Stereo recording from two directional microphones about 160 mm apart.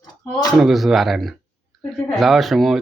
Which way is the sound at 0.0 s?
25° left (ahead or behind).